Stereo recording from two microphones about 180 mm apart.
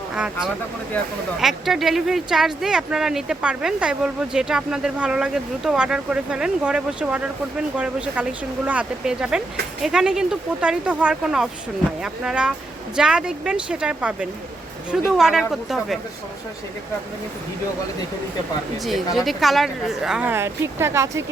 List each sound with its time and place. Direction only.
0.2 s speech: 5° right (ahead or behind)
19.1 s speech: centre (ahead or behind)